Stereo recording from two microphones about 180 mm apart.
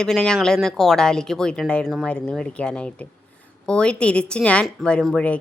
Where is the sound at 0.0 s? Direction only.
5° left (ahead or behind).